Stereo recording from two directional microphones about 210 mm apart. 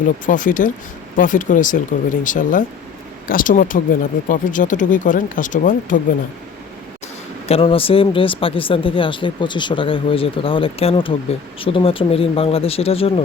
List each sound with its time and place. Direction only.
0.3 s speech: 40° left (ahead or behind)
7.4 s speech: 25° left (ahead or behind)